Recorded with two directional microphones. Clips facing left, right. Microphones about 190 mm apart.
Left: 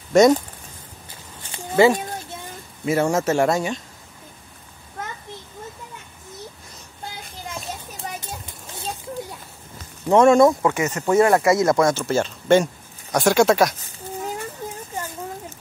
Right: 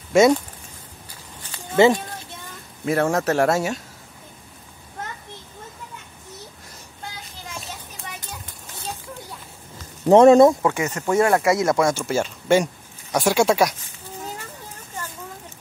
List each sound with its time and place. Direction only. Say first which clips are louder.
0.1 s speech: left 1 dB; 5° right (ahead or behind)
1.8 s a child's voice: even; 20° right (ahead or behind)
2.8 s speech: left 1 dB; centre (ahead or behind)
8.0 s children playing: left 6 dB; 40° left (ahead or behind)
10.0 s speech: right 3 dB; 35° right (ahead or behind)
10.7 s speech: left 2 dB; 20° left (ahead or behind)
11.5 s speech: left 2 dB; 10° right (ahead or behind)